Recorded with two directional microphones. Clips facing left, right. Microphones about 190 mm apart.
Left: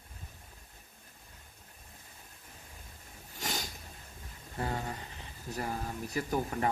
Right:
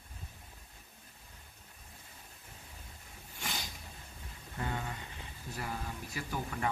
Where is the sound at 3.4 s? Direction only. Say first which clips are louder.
Left 4 dB; 40° left (ahead or behind).